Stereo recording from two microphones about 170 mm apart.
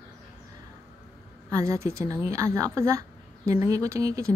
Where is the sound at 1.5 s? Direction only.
15° right (ahead or behind).